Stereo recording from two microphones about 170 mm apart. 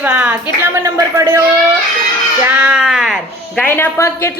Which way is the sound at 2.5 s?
5° right (ahead or behind).